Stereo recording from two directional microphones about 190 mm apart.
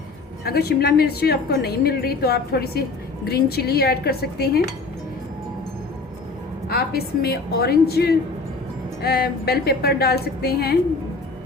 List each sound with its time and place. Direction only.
0.4 s a woman's voice: 55° left (ahead or behind)
6.7 s a woman's voice: 55° left (ahead or behind)